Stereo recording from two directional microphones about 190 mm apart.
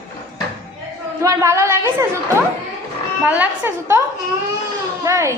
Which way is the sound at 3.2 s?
10° right (ahead or behind).